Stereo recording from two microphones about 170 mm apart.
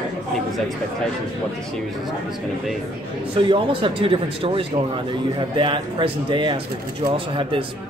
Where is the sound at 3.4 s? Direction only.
30° right (ahead or behind).